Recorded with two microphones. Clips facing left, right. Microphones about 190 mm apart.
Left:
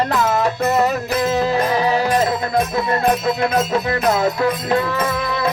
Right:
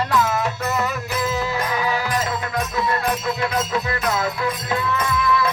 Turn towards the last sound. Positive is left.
turn(degrees=35)  # may be behind; listen again after turning